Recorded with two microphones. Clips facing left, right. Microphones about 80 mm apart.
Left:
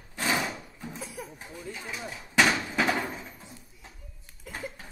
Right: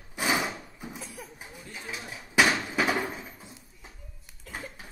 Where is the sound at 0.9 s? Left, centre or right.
Centre.